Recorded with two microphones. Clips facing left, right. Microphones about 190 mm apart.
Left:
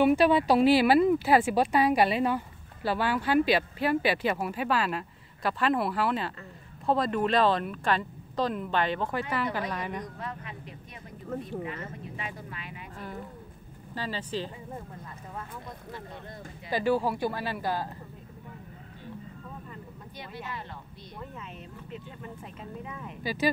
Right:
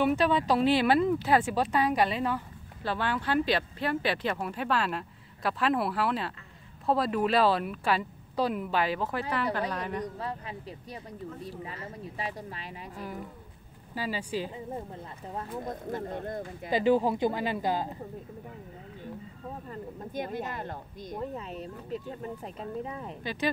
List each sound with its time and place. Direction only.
0.0 s speech: 10° left (ahead or behind)
9.7 s speech: 10° left (ahead or behind)
10.0 s speech: 30° right (ahead or behind)
12.9 s speech: 10° right (ahead or behind)
15.3 s speech: 45° right (ahead or behind)
16.7 s speech: 20° right (ahead or behind)
19.7 s speech: 45° right (ahead or behind)
23.2 s speech: 5° left (ahead or behind)